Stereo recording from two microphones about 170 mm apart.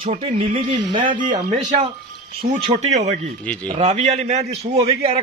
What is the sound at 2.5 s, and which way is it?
Speech, 40° right (ahead or behind).